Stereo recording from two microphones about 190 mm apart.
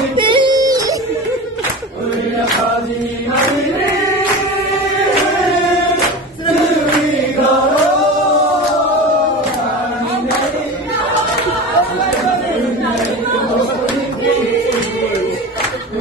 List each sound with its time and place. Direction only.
0.2 s yodeling: 25° right (ahead or behind)